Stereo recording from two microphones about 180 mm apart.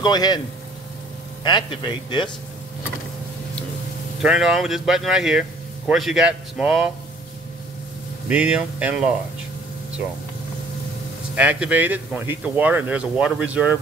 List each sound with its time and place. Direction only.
0.0 s speech: 25° left (ahead or behind)
1.4 s speech: 25° left (ahead or behind)
4.2 s speech: 5° right (ahead or behind)
8.3 s speech: 5° right (ahead or behind)
11.3 s speech: 5° right (ahead or behind)